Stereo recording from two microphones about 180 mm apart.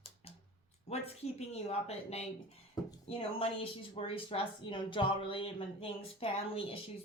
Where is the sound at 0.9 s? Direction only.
35° left (ahead or behind).